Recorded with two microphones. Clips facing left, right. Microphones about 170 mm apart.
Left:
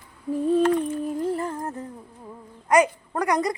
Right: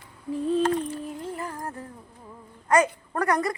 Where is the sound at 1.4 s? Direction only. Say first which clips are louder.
Left 5 dB; 25° left (ahead or behind).